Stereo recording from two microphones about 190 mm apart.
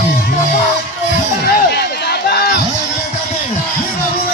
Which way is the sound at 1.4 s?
55° left (ahead or behind).